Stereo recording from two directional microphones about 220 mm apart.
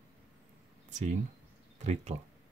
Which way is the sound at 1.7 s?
30° right (ahead or behind).